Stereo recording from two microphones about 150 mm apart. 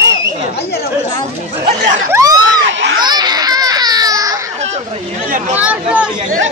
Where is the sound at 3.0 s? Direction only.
30° right (ahead or behind).